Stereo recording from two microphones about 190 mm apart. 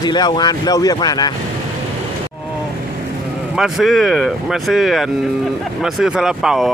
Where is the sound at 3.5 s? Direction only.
Centre (ahead or behind).